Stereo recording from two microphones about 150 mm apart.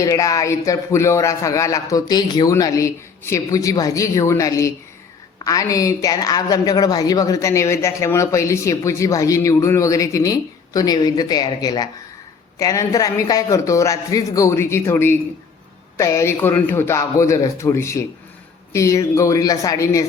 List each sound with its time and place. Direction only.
0.0 s speech: 20° left (ahead or behind)